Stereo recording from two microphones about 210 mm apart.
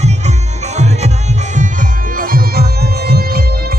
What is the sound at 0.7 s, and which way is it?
Music, 30° right (ahead or behind).